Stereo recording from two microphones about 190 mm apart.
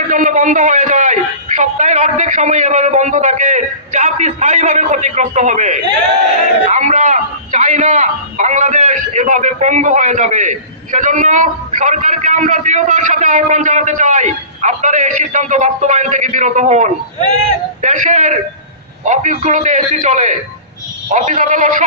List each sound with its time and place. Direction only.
0.1 s a man's voice: 40° right (ahead or behind)